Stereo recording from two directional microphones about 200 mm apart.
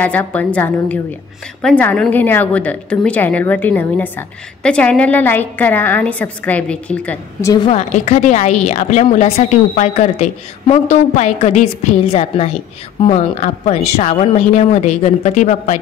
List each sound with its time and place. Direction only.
0.0 s a woman's voice: 5° left (ahead or behind)
7.5 s a woman's voice: 25° left (ahead or behind)
7.9 s a woman's voice: 35° left (ahead or behind)